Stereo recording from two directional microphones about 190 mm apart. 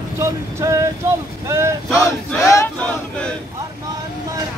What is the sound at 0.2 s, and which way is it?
Speech, 15° right (ahead or behind).